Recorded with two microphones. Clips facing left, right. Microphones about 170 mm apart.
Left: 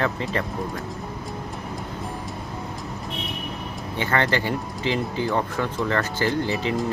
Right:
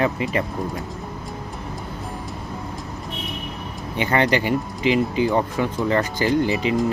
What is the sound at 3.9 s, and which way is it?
Speech, 15° right (ahead or behind).